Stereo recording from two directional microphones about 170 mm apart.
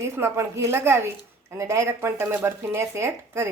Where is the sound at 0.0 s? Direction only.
15° right (ahead or behind).